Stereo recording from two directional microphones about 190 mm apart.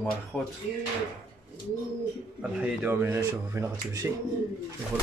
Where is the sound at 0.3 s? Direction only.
Centre (ahead or behind).